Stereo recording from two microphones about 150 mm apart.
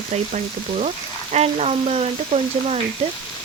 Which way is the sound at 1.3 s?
45° right (ahead or behind).